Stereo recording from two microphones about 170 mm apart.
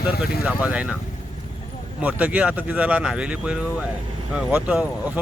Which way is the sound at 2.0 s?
10° right (ahead or behind).